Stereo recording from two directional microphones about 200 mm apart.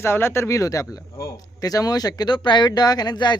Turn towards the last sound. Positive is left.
turn(degrees=20)  # may be behind; listen again after turning